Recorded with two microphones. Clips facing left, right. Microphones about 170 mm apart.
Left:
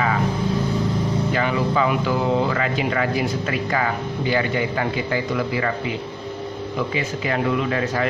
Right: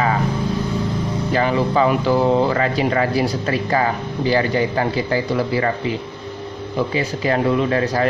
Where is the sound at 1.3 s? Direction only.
35° right (ahead or behind).